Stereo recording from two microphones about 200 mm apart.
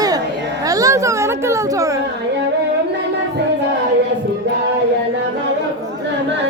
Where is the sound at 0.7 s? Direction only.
15° right (ahead or behind).